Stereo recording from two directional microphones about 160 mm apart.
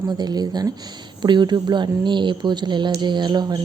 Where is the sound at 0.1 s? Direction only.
25° right (ahead or behind).